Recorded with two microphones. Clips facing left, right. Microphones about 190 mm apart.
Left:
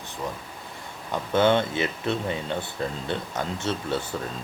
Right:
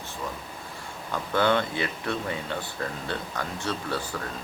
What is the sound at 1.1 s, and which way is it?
Speech, 20° left (ahead or behind).